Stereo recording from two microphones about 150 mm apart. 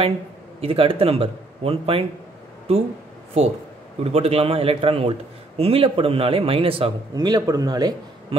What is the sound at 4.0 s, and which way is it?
A man's voice, 45° right (ahead or behind).